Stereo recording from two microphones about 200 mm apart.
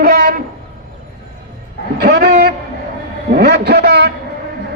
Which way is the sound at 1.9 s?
50° right (ahead or behind).